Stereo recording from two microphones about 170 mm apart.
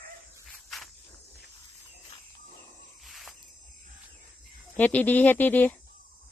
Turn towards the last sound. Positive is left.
turn(degrees=10)  # may be behind; listen again after turning